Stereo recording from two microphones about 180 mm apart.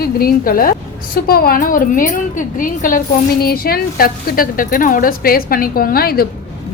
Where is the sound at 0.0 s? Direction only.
55° left (ahead or behind).